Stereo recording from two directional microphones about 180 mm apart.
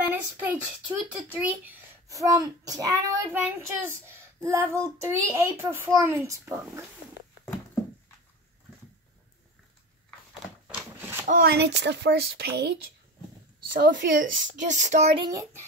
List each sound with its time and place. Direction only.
0.0 s a child's voice: 10° right (ahead or behind)
10.7 s a sound: 10° right (ahead or behind)
11.2 s speech: 55° right (ahead or behind)
13.7 s a woman's voice: 50° right (ahead or behind)
15.2 s a child's voice: 15° right (ahead or behind)